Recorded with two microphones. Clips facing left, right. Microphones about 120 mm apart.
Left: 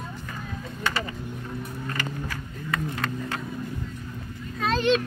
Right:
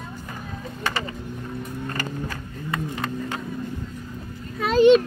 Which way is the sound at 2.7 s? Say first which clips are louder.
Right 1 dB; 15° right (ahead or behind).